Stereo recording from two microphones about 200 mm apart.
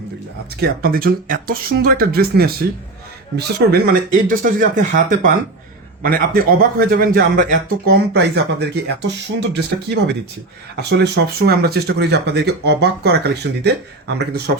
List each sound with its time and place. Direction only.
0.6 s speech: 45° right (ahead or behind)